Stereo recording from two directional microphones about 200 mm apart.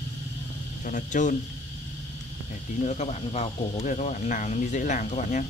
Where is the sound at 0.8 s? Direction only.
40° left (ahead or behind).